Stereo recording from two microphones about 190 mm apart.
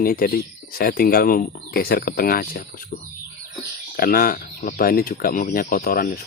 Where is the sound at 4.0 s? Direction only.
50° left (ahead or behind).